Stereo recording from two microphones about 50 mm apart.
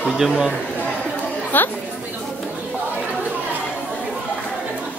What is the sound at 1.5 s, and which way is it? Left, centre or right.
Chatter, left.